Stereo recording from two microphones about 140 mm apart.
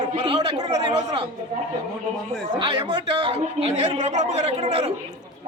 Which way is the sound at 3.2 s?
45° right (ahead or behind).